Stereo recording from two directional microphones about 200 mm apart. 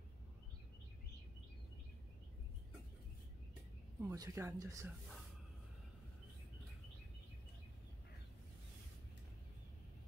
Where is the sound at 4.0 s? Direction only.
15° right (ahead or behind).